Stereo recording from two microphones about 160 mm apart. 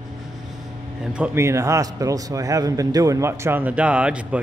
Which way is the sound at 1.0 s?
10° right (ahead or behind).